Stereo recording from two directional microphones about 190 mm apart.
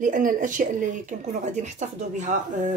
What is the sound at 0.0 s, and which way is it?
Speech, 45° right (ahead or behind).